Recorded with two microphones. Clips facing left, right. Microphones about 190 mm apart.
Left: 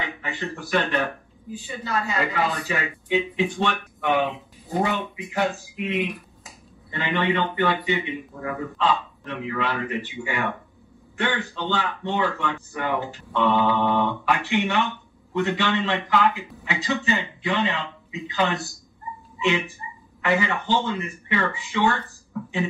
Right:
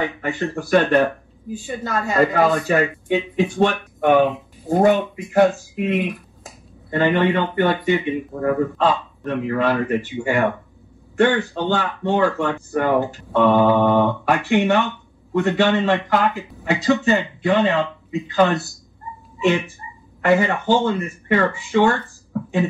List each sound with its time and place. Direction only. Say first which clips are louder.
0.0 s speech: right 8 dB; 45° right (ahead or behind)
20.2 s speech: right 6 dB; 45° right (ahead or behind)